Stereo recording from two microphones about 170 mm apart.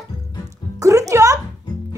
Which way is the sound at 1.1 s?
20° right (ahead or behind).